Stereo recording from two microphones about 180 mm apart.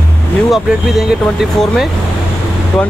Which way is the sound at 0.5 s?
Centre (ahead or behind).